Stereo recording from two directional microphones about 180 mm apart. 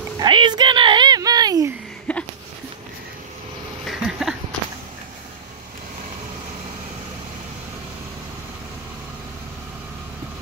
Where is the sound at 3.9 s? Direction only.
Centre (ahead or behind).